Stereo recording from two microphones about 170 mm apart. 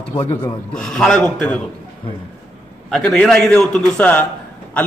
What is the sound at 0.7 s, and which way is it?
Speech, 5° left (ahead or behind).